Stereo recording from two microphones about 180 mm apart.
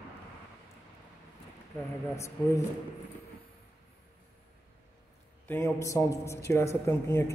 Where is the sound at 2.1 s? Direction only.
15° left (ahead or behind).